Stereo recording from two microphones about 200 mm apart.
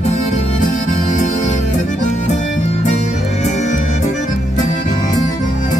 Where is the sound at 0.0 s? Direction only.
35° left (ahead or behind).